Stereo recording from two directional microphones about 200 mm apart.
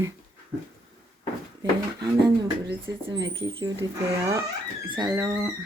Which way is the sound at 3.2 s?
25° right (ahead or behind).